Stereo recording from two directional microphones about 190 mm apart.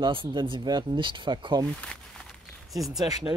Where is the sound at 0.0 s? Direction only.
25° right (ahead or behind).